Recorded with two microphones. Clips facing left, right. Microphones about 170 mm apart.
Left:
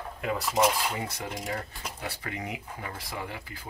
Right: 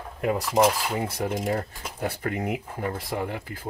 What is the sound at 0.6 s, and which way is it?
Speech, 45° right (ahead or behind).